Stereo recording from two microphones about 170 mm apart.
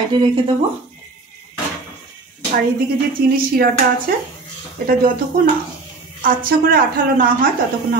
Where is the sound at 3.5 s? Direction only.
60° right (ahead or behind).